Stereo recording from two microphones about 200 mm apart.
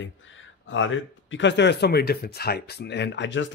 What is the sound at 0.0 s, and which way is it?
Speech, 70° left (ahead or behind).